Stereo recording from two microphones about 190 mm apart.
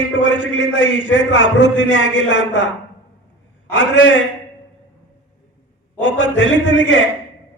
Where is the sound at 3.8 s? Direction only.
80° left.